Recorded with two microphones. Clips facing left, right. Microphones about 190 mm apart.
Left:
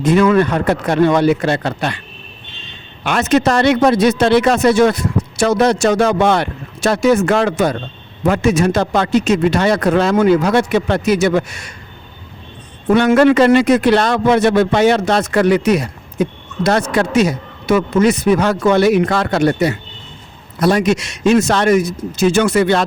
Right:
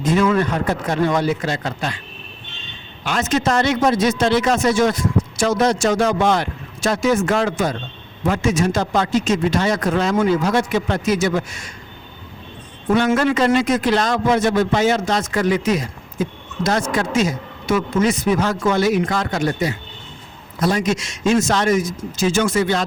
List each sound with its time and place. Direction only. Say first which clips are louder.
0.0 s a man's voice: left 5 dB; 65° left (ahead or behind)
3.0 s a man's voice: left 6 dB; 65° left (ahead or behind)
12.9 s a man's voice: left 6 dB; 65° left (ahead or behind)